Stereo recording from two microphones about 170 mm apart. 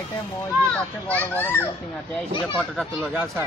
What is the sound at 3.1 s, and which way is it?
Speech, 15° right (ahead or behind).